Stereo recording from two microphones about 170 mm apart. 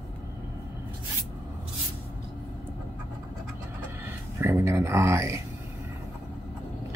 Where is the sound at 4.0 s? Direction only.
15° right (ahead or behind).